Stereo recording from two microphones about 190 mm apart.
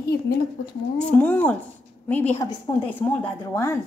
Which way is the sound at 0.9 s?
5° left (ahead or behind).